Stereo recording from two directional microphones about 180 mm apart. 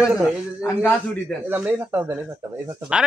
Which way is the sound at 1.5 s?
10° right (ahead or behind).